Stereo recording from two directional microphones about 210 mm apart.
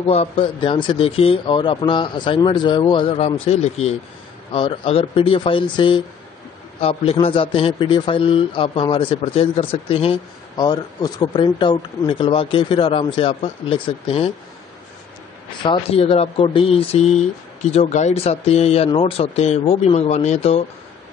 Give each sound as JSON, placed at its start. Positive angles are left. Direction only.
{"t": 0.0, "sound": "a man's voice", "side_deg": 30}
{"t": 15.6, "sound": "a man's voice", "side_deg": 25}